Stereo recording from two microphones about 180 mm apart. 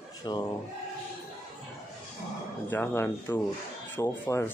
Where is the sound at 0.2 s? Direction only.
25° left (ahead or behind).